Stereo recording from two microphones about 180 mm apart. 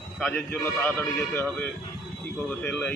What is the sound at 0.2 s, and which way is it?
A man's voice, 10° left (ahead or behind).